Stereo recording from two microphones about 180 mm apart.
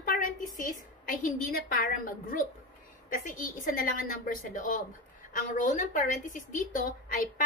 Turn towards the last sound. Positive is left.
turn(degrees=50)  # may be behind; listen again after turning